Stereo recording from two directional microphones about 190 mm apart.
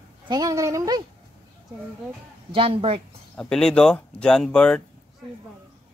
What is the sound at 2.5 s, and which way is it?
Speech, 30° right (ahead or behind).